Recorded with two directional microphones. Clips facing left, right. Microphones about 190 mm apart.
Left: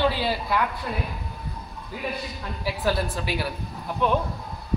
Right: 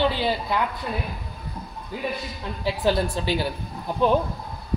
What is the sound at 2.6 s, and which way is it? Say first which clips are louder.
Speech: right 3 dB; 25° right (ahead or behind).